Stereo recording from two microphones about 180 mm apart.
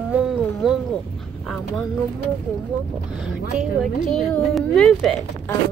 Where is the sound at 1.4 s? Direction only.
Centre (ahead or behind).